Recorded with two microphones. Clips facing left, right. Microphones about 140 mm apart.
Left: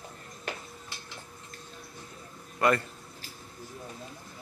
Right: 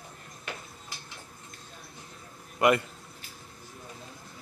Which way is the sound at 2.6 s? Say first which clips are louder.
Right 2 dB; 20° right (ahead or behind).